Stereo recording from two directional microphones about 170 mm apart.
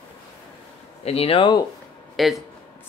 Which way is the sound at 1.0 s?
35° left (ahead or behind).